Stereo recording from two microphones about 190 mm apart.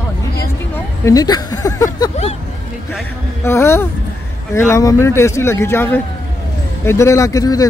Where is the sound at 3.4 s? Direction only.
15° left (ahead or behind).